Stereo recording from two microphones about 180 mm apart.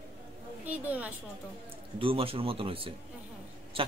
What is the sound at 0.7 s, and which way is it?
Speech, 10° right (ahead or behind).